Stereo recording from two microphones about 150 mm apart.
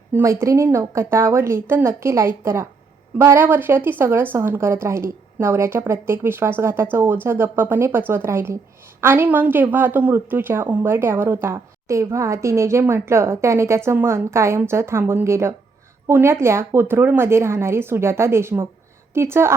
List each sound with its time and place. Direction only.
0.1 s a woman's voice: 15° right (ahead or behind)